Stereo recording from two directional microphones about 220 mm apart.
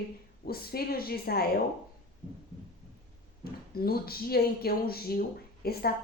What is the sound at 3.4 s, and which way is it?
A woman's voice, 45° left (ahead or behind).